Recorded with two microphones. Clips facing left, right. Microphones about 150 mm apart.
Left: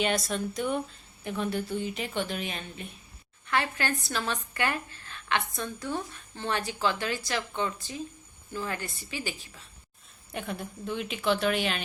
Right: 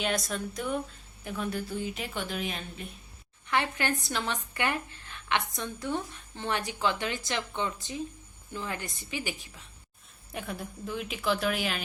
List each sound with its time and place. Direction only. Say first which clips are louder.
0.0 s a woman's voice: left 3 dB; centre (ahead or behind)
3.4 s a woman's voice: even; 15° right (ahead or behind)
10.3 s a woman's voice: left 2 dB; centre (ahead or behind)